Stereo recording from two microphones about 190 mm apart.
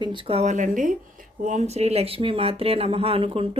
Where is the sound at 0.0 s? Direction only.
25° right (ahead or behind).